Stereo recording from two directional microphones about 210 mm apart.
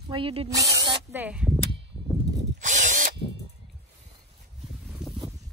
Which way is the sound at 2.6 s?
35° right (ahead or behind).